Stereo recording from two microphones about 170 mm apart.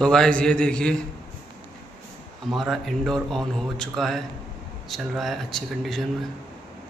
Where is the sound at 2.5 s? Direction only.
Centre (ahead or behind).